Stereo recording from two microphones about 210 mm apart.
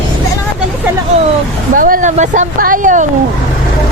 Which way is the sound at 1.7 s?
40° right (ahead or behind).